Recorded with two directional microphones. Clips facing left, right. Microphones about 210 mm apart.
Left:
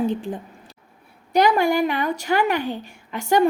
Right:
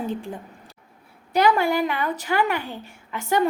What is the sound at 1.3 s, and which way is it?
A woman's voice, 15° left (ahead or behind).